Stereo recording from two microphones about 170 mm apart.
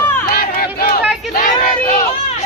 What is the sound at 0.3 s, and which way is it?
Crowd, 60° left (ahead or behind).